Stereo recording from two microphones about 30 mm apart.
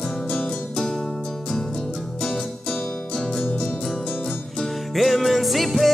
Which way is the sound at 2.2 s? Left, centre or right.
Left.